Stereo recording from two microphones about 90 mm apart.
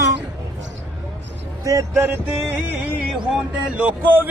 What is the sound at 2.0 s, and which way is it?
Music, 25° right (ahead or behind).